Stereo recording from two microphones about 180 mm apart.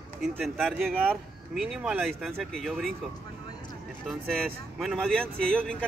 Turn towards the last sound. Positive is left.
turn(degrees=5)  # may be behind; listen again after turning